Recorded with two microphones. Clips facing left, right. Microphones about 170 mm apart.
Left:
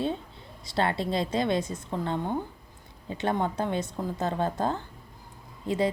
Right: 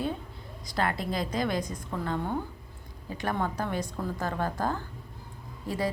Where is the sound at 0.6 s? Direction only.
25° left (ahead or behind).